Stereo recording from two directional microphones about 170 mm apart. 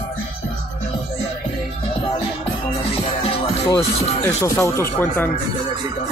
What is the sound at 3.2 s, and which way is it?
Music, 30° left (ahead or behind).